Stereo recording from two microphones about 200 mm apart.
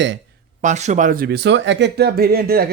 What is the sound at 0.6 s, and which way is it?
Speech, 35° right (ahead or behind).